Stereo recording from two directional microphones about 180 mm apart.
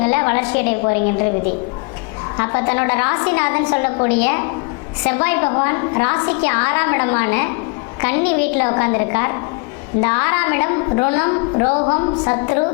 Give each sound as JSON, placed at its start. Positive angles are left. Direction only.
{"t": 0.0, "sound": "a woman's voice", "side_deg": 20}
{"t": 2.4, "sound": "a woman's voice", "side_deg": 20}